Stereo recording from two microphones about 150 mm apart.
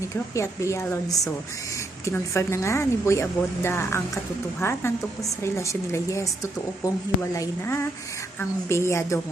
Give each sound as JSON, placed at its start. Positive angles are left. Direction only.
{"t": 0.1, "sound": "a woman's voice", "side_deg": 20}